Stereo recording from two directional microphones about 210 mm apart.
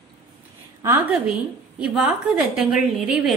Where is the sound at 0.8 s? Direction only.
15° right (ahead or behind).